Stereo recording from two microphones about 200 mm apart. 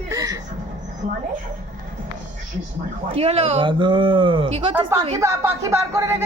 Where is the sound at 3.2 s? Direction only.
30° right (ahead or behind).